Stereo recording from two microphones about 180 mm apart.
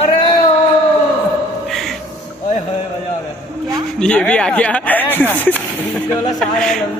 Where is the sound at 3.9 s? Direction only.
5° left (ahead or behind).